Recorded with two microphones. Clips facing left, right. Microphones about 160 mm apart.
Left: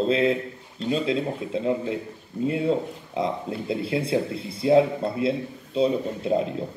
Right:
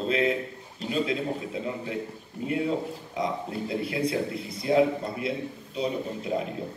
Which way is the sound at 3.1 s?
30° left (ahead or behind).